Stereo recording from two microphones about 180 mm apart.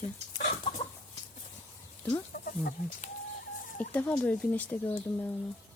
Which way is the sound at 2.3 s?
50° left (ahead or behind).